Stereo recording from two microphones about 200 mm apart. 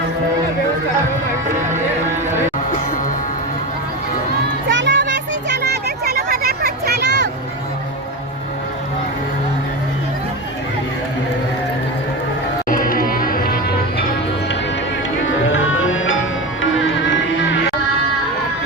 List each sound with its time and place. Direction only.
4.7 s music: 60° right (ahead or behind)
5.6 s a sound: 55° right (ahead or behind)
12.6 s music: 45° left (ahead or behind)
15.5 s music: 80° left